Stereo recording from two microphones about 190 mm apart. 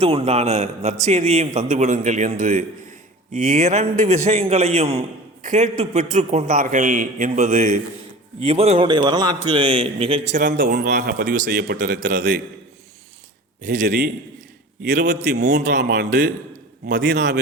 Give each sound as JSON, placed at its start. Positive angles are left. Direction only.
{"t": 0.0, "sound": "a man's voice", "side_deg": -30}
{"t": 15.1, "sound": "a man's voice", "side_deg": -60}
{"t": 16.0, "sound": "a man's voice", "side_deg": -45}
{"t": 16.8, "sound": "a man's voice", "side_deg": -65}